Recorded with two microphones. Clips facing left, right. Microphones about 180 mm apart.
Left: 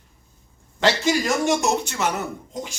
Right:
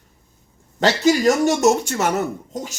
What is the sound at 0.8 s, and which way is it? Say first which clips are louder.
Speech: right 4 dB; 40° right (ahead or behind).